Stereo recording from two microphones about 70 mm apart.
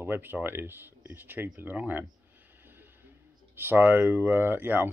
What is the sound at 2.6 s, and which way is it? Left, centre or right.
Music, right.